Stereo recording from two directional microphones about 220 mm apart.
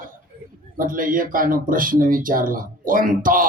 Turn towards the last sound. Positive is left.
turn(degrees=-40)  # may be behind; listen again after turning